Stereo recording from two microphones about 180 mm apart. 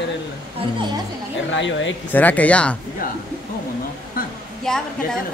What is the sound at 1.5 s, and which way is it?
Speech, 90° left.